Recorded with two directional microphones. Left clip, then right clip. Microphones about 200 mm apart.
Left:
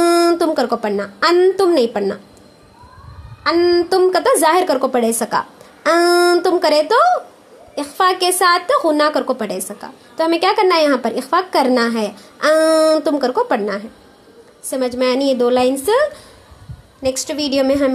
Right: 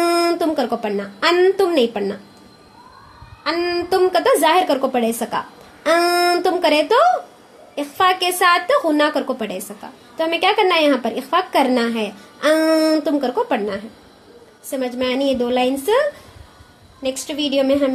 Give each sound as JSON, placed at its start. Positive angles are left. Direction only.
{"t": 0.0, "sound": "a sound", "side_deg": 25}
{"t": 1.6, "sound": "a woman's voice", "side_deg": 25}
{"t": 3.4, "sound": "a woman's voice", "side_deg": 20}